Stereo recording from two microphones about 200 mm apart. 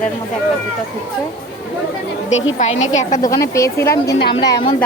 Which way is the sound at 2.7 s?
75° left (ahead or behind).